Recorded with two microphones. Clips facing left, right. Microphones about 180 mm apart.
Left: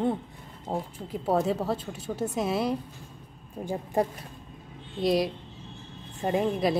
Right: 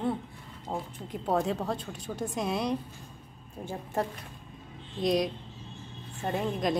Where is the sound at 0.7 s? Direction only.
35° left (ahead or behind).